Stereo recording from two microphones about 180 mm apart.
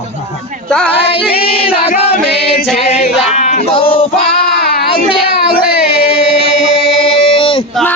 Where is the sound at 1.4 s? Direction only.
30° left (ahead or behind).